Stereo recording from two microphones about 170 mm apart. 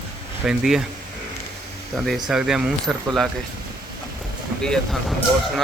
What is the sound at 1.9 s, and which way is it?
Speech, centre (ahead or behind).